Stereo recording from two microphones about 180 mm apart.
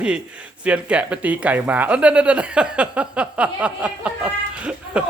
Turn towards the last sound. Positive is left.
turn(degrees=-5)  # may be behind; listen again after turning